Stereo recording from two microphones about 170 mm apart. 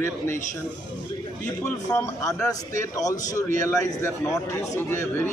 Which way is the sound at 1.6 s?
15° left (ahead or behind).